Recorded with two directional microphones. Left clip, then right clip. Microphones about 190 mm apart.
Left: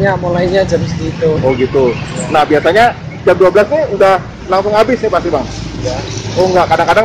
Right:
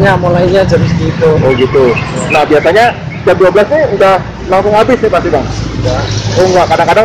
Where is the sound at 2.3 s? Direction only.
20° left (ahead or behind).